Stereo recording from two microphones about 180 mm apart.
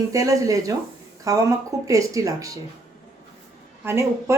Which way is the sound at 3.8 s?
15° right (ahead or behind).